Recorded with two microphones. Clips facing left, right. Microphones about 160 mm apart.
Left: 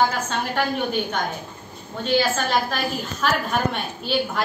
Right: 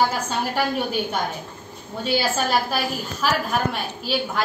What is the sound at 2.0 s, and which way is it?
A woman's voice, 10° right (ahead or behind).